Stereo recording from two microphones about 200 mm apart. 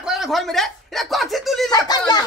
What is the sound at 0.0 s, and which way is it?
Speech, centre (ahead or behind).